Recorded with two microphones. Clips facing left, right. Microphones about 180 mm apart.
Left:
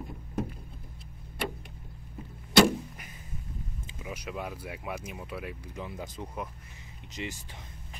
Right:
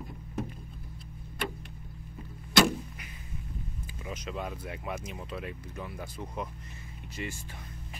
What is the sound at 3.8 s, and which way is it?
Speech, 10° left (ahead or behind).